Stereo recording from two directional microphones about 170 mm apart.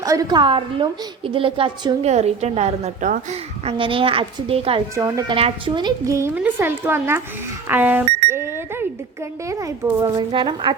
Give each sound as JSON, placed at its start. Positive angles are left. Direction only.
{"t": 0.0, "sound": "a woman's voice", "side_deg": -20}
{"t": 2.0, "sound": "a woman's voice", "side_deg": -40}
{"t": 4.9, "sound": "a woman's voice", "side_deg": -20}
{"t": 5.3, "sound": "a woman's voice", "side_deg": -30}